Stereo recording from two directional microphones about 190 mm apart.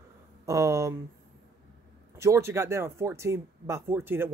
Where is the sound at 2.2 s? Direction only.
15° right (ahead or behind).